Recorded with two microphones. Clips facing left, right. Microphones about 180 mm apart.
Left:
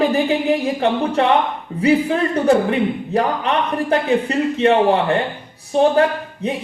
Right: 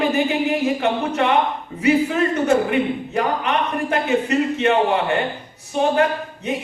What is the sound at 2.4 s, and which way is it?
Speech, 35° left (ahead or behind).